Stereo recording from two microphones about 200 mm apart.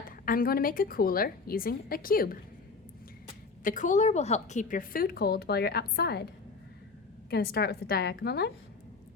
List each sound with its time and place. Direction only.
0.3 s a woman's voice: 45° left (ahead or behind)
3.6 s a woman's voice: 40° left (ahead or behind)
7.3 s a woman's voice: 50° left (ahead or behind)